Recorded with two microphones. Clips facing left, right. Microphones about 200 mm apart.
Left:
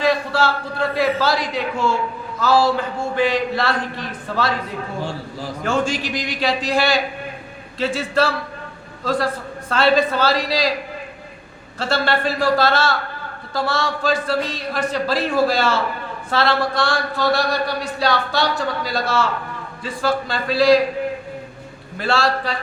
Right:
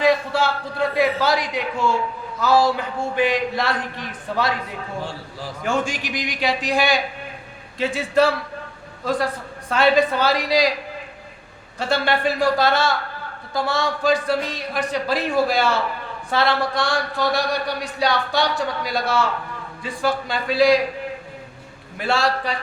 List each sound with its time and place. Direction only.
0.0 s speech: 15° right (ahead or behind)
5.6 s speech: 15° right (ahead or behind)
11.8 s speech: 15° right (ahead or behind)
21.9 s speech: 15° right (ahead or behind)